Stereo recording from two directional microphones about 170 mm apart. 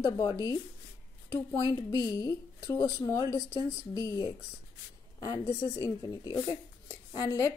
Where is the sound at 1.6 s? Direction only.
25° left (ahead or behind).